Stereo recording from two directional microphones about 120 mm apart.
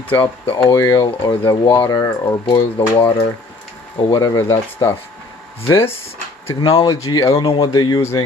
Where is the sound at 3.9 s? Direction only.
35° left (ahead or behind).